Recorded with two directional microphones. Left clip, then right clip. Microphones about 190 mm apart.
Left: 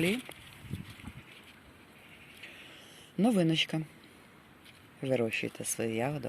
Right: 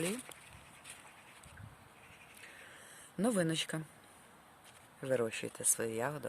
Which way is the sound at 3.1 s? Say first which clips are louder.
Left 5 dB; 5° right (ahead or behind).